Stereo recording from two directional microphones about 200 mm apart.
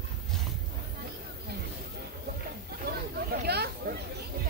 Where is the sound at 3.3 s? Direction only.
50° right (ahead or behind).